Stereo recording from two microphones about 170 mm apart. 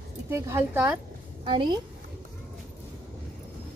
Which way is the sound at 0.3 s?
15° right (ahead or behind).